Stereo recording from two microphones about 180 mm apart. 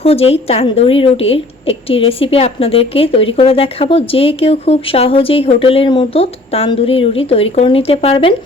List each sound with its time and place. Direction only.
0.0 s a woman's voice: 35° left (ahead or behind)